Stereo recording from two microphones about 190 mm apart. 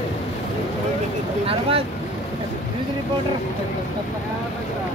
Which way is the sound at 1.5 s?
30° right (ahead or behind).